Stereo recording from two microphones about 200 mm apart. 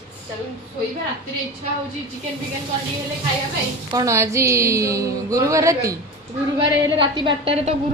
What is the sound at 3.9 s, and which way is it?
A woman's voice, 15° right (ahead or behind).